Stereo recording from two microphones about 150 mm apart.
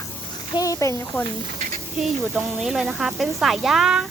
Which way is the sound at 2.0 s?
Centre (ahead or behind).